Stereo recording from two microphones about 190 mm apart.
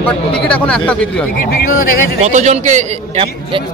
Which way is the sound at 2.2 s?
35° right (ahead or behind).